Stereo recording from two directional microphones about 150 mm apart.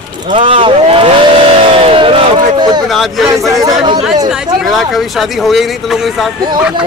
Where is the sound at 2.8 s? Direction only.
Centre (ahead or behind).